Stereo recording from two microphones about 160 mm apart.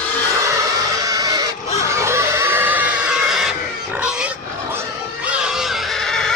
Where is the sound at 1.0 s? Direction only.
20° right (ahead or behind).